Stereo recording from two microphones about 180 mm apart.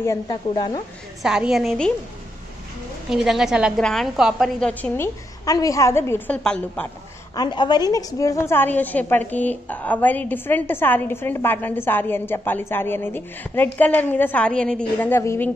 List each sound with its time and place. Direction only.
0.3 s speech: 25° left (ahead or behind)
1.2 s a woman's voice: 5° right (ahead or behind)
3.1 s a woman's voice: centre (ahead or behind)
7.3 s a woman's voice: 25° left (ahead or behind)